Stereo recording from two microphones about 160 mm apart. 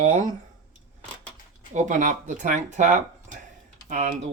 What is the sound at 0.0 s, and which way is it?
Speech, 50° right (ahead or behind).